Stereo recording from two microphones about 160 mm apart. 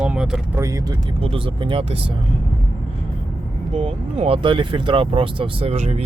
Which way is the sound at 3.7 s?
35° right (ahead or behind).